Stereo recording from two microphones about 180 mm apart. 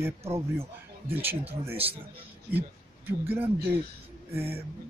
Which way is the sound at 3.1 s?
10° right (ahead or behind).